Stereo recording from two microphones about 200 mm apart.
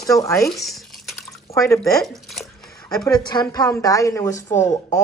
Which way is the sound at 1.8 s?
Centre (ahead or behind).